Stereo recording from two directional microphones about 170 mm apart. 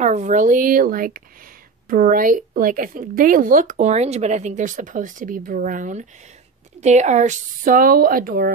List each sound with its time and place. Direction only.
0.0 s speech: 45° right (ahead or behind)